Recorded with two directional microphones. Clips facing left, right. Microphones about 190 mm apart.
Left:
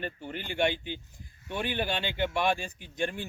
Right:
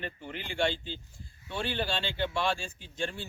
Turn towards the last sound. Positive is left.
turn(degrees=15)  # may be behind; listen again after turning